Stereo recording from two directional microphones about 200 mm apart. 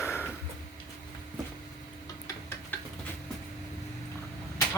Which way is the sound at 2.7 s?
10° left (ahead or behind).